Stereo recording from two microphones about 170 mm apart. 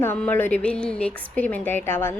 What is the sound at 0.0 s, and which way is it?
A woman's voice, 10° left (ahead or behind).